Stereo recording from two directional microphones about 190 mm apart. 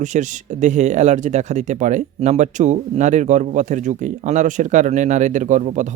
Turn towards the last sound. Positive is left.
turn(degrees=-40)  # may be behind; listen again after turning